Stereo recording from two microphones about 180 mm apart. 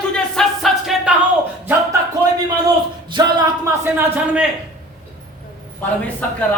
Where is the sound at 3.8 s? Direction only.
10° right (ahead or behind).